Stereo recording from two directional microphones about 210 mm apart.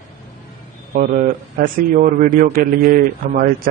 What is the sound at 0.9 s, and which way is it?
A man's voice, 40° right (ahead or behind).